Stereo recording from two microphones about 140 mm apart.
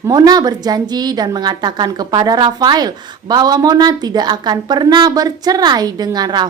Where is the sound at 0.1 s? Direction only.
25° right (ahead or behind).